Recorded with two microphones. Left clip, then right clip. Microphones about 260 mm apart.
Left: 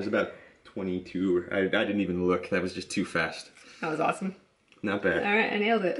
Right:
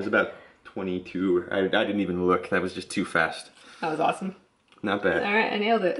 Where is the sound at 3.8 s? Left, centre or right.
Centre.